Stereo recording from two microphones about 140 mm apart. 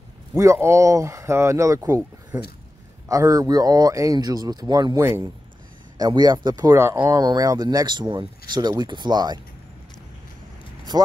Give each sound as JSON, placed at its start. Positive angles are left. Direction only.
{"t": 0.4, "sound": "speech", "side_deg": -20}
{"t": 2.3, "sound": "speech", "side_deg": -10}
{"t": 3.1, "sound": "speech", "side_deg": -25}